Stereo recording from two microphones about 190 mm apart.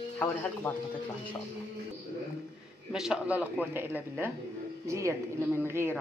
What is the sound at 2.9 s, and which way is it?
Speech, 5° right (ahead or behind).